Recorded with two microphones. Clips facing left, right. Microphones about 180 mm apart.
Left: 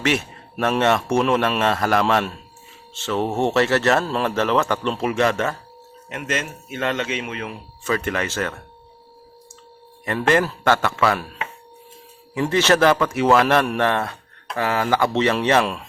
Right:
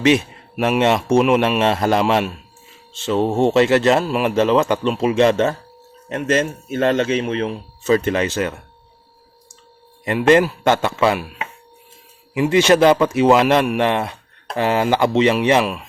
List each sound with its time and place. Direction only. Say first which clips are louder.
0.0 s speech: right 7 dB; 15° right (ahead or behind)
6.1 s a man's voice: right 8 dB; 35° right (ahead or behind); by 8.5 s 15° right (ahead or behind)
10.0 s speech: right 5 dB; 15° right (ahead or behind)